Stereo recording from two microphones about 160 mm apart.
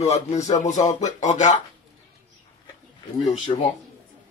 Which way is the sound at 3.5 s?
30° left (ahead or behind).